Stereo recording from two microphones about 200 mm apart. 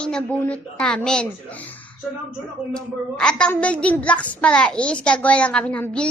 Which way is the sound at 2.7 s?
5° left (ahead or behind).